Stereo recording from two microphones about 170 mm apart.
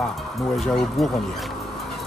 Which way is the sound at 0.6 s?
Centre (ahead or behind).